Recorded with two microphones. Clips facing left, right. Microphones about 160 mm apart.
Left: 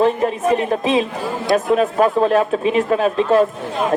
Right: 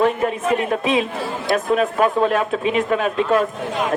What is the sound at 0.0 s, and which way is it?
Speech, 30° left (ahead or behind).